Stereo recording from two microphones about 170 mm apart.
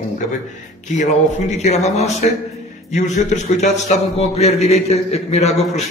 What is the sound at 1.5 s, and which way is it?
A man's voice, 40° left (ahead or behind).